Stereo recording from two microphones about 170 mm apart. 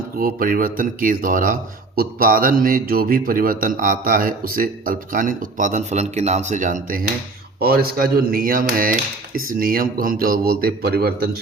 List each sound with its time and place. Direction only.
0.2 s speech: 55° right (ahead or behind)
7.6 s speech: 65° right (ahead or behind)